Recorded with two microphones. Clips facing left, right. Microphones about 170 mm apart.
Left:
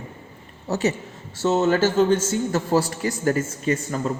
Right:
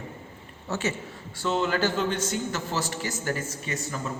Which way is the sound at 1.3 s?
25° left (ahead or behind).